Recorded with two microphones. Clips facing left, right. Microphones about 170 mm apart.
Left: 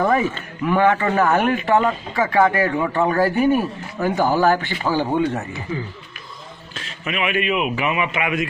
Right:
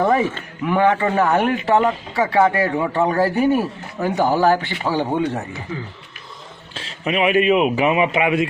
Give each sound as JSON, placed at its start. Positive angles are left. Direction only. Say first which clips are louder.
{"t": 0.0, "sound": "speech", "louder": "right 1 dB", "side_deg": -20}
{"t": 6.7, "sound": "a man's voice", "louder": "right 5 dB", "side_deg": -30}